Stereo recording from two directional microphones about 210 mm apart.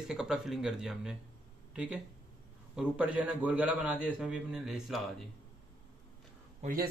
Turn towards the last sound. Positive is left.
turn(degrees=-45)  # may be behind; listen again after turning